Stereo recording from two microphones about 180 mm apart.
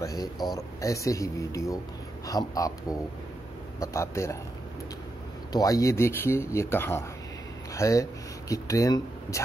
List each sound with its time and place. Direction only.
0.0 s speech: 20° left (ahead or behind)
5.5 s speech: 20° left (ahead or behind)